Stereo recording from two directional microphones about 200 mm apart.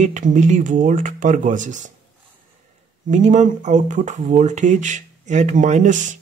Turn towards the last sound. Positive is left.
turn(degrees=-40)  # may be behind; listen again after turning